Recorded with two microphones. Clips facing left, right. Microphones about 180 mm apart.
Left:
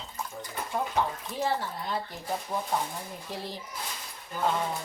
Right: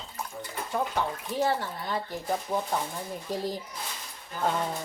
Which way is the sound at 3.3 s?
45° right (ahead or behind).